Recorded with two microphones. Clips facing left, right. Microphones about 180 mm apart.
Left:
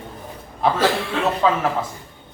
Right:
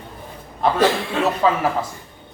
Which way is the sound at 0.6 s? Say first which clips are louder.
Right 1 dB; centre (ahead or behind).